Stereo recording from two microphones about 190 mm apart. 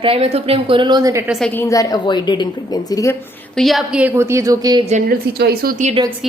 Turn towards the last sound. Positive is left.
turn(degrees=-45)  # may be behind; listen again after turning